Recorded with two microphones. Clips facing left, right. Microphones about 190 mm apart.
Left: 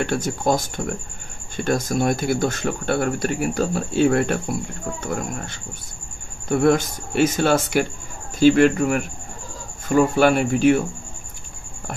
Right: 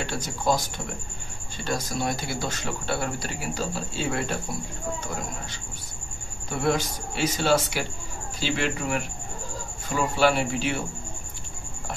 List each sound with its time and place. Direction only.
0.0 s speech: 55° left (ahead or behind)